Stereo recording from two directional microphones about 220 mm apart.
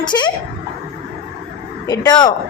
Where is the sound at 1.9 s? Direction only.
15° left (ahead or behind).